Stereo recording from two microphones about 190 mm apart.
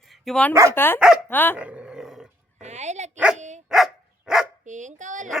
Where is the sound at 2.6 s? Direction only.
35° right (ahead or behind).